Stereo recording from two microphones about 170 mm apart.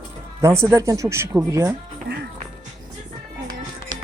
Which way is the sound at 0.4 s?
15° right (ahead or behind).